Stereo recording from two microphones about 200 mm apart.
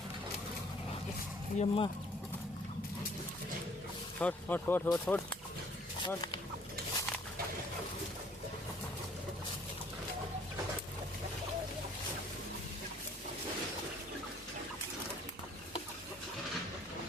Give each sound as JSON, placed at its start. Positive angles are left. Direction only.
{"t": 1.5, "sound": "speech", "side_deg": 25}
{"t": 4.2, "sound": "speech", "side_deg": 5}
{"t": 6.1, "sound": "speech", "side_deg": 20}